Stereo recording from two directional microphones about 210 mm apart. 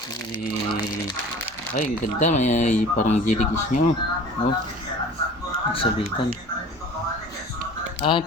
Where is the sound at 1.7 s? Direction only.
35° left (ahead or behind).